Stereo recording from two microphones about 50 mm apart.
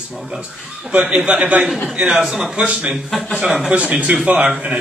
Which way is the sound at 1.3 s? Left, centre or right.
Right.